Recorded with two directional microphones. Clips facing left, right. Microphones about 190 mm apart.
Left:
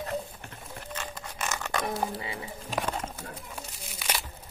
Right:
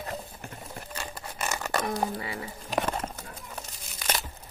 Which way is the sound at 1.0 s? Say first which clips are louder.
Right 1 dB; 10° right (ahead or behind).